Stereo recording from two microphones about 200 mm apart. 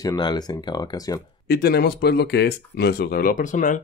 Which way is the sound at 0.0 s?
20° left (ahead or behind).